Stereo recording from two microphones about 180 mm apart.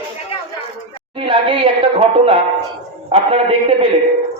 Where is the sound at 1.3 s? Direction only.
30° right (ahead or behind).